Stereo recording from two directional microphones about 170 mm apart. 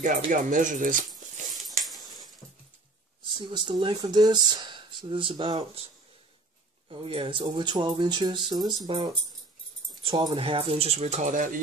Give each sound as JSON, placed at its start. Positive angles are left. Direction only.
{"t": 0.0, "sound": "speech", "side_deg": -50}
{"t": 1.9, "sound": "dog", "side_deg": 0}
{"t": 3.3, "sound": "speech", "side_deg": -30}
{"t": 6.9, "sound": "speech", "side_deg": -35}